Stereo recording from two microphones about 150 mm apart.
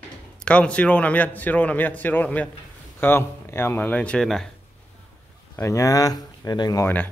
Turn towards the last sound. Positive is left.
turn(degrees=10)  # may be behind; listen again after turning